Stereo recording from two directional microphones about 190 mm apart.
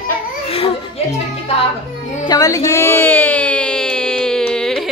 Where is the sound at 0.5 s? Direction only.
30° left (ahead or behind).